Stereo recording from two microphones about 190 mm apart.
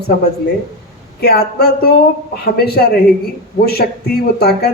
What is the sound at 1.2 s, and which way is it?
A woman's voice, 55° left (ahead or behind).